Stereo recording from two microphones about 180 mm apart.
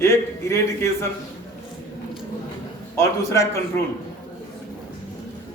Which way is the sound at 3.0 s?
15° left (ahead or behind).